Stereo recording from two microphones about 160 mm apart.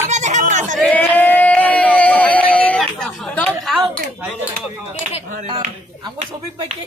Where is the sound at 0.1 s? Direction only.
50° right (ahead or behind).